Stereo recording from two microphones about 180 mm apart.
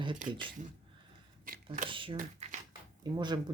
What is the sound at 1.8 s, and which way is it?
Speech, 30° right (ahead or behind).